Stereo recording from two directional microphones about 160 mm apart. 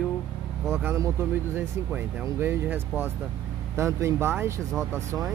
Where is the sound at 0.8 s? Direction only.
15° right (ahead or behind).